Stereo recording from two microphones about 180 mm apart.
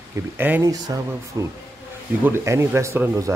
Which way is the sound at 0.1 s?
10° right (ahead or behind).